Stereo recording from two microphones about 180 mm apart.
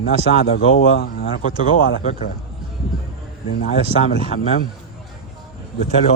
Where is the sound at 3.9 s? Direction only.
35° right (ahead or behind).